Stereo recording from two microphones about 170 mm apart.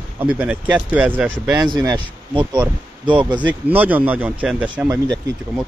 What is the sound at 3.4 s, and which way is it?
Speech, 10° right (ahead or behind).